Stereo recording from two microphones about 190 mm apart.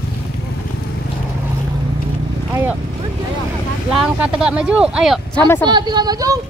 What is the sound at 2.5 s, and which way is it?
Speech, 10° right (ahead or behind).